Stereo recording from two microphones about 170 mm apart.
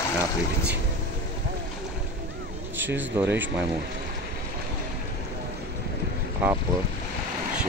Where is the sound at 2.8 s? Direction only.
10° right (ahead or behind).